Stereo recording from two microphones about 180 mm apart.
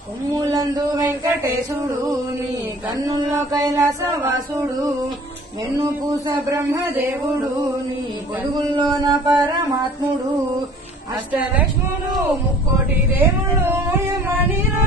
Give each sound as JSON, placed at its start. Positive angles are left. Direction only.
{"t": 0.3, "sound": "chant", "side_deg": -20}
{"t": 3.0, "sound": "chant", "side_deg": -20}
{"t": 5.8, "sound": "a man's voice", "side_deg": -20}
{"t": 8.5, "sound": "chant", "side_deg": -25}
{"t": 13.2, "sound": "a sound", "side_deg": -15}